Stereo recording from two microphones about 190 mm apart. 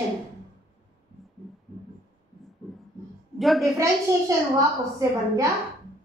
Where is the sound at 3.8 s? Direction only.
15° right (ahead or behind).